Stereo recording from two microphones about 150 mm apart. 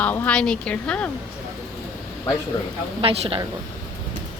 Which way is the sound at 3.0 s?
40° right (ahead or behind).